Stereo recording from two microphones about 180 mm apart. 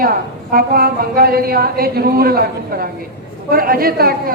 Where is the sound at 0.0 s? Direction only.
55° right (ahead or behind).